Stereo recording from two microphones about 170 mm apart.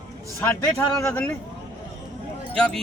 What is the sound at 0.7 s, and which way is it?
Speech, 15° left (ahead or behind).